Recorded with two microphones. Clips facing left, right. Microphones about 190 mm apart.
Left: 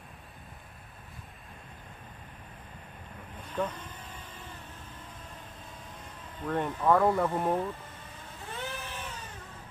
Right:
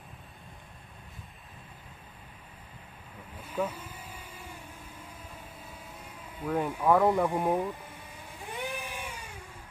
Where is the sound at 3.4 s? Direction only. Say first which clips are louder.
Right 1 dB; 10° right (ahead or behind).